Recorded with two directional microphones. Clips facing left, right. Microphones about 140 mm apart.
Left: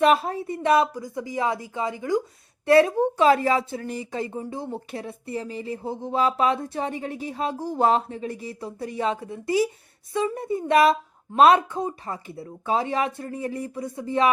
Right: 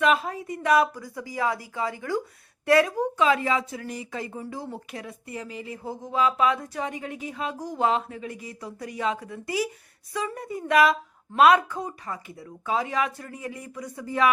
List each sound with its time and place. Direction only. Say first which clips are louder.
0.0 s speech: left 3 dB; 35° left (ahead or behind)